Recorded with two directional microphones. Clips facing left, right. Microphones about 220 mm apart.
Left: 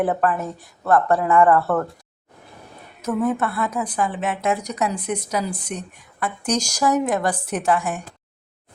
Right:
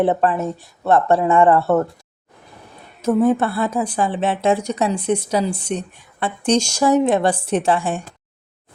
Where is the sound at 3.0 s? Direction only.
30° right (ahead or behind).